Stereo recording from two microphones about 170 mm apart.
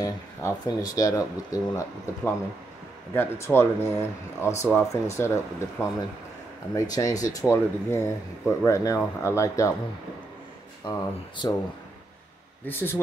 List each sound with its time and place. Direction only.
0.0 s speech: 20° left (ahead or behind)
6.7 s speech: 20° left (ahead or behind)
10.9 s speech: 20° left (ahead or behind)
12.6 s speech: 10° left (ahead or behind)